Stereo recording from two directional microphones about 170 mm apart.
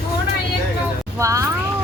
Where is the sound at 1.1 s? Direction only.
20° right (ahead or behind).